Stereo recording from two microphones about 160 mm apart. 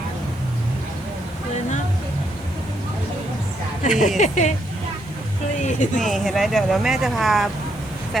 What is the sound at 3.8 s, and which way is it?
Speech, 50° left (ahead or behind).